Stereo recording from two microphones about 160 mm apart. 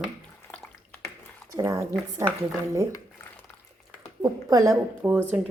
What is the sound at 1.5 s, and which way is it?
Speech, 20° right (ahead or behind).